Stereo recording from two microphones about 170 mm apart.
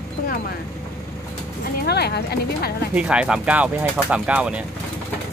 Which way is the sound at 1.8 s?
70° left (ahead or behind).